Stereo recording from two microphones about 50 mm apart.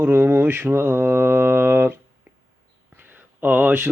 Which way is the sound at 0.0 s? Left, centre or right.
Right.